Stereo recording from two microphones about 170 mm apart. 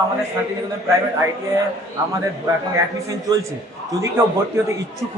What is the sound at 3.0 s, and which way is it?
Speech, 20° right (ahead or behind).